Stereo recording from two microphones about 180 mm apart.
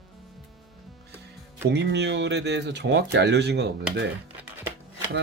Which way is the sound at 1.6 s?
70° right (ahead or behind).